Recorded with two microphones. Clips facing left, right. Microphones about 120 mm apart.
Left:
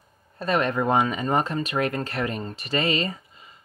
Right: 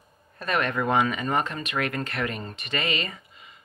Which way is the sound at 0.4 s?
30° left (ahead or behind).